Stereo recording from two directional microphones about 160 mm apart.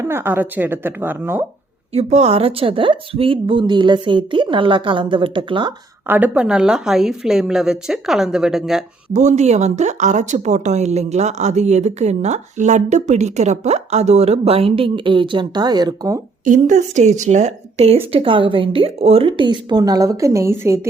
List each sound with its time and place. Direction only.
0.1 s speech: 10° right (ahead or behind)
1.9 s speech: 40° right (ahead or behind)
6.1 s a woman's voice: 10° right (ahead or behind)
9.1 s speech: 45° right (ahead or behind); by 16.2 s 25° right (ahead or behind)
16.5 s speech: 50° right (ahead or behind); by 20.8 s 15° right (ahead or behind)